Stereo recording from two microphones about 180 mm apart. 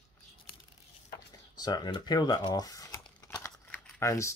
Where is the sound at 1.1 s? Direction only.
25° left (ahead or behind).